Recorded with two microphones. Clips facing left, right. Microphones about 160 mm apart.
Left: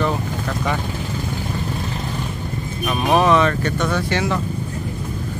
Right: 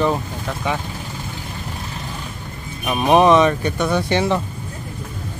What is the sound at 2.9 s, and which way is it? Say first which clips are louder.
Speech: right 3 dB; 20° right (ahead or behind).